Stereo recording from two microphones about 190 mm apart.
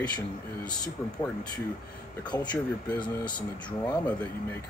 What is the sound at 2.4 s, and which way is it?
Speech, 5° left (ahead or behind).